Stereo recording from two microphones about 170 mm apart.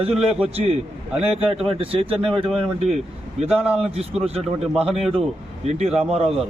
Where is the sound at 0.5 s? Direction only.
35° right (ahead or behind).